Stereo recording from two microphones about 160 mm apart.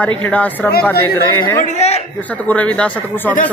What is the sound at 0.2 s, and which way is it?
Speech, 10° left (ahead or behind).